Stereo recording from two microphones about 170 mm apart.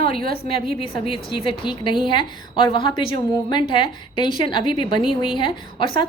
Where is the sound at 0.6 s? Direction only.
30° left (ahead or behind).